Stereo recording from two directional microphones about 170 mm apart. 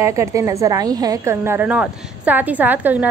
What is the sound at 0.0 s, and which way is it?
A woman's voice, 20° right (ahead or behind).